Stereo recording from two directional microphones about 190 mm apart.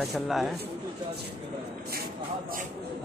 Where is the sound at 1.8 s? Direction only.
55° right (ahead or behind).